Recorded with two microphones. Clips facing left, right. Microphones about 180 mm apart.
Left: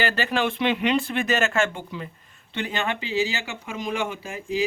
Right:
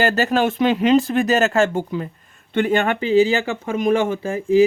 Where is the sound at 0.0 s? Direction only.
45° right (ahead or behind).